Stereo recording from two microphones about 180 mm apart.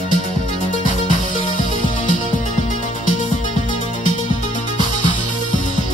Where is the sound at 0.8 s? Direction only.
45° left (ahead or behind).